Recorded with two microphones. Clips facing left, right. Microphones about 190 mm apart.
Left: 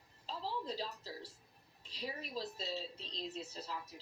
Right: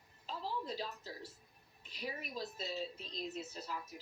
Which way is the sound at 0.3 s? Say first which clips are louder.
Even; 35° left (ahead or behind).